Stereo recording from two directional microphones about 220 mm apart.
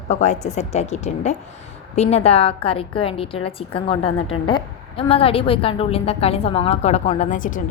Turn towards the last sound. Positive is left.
turn(degrees=35)  # may be behind; listen again after turning